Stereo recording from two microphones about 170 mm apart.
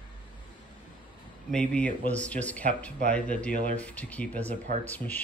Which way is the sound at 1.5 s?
5° left (ahead or behind).